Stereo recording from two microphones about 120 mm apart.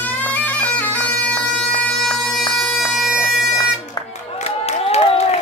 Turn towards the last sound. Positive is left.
turn(degrees=60)  # may be behind; listen again after turning